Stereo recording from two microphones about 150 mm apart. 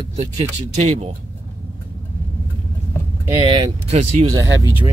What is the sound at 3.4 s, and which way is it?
Speech, 35° right (ahead or behind).